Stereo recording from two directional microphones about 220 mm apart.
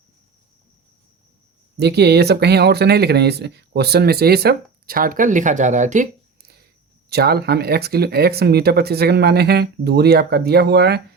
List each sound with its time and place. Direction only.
1.8 s speech: 50° right (ahead or behind)